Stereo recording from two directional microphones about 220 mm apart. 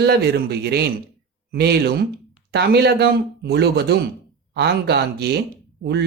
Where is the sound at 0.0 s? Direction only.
45° right (ahead or behind).